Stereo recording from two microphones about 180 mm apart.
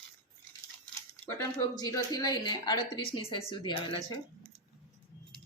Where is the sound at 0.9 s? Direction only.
20° left (ahead or behind).